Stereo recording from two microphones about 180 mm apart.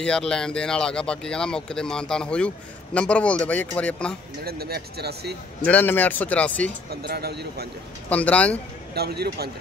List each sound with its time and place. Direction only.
0.0 s speech: 5° left (ahead or behind)
4.5 s speech: 60° right (ahead or behind)
5.6 s speech: 10° left (ahead or behind)
6.9 s speech: 60° right (ahead or behind)
8.1 s speech: 10° left (ahead or behind)
8.9 s speech: 60° right (ahead or behind)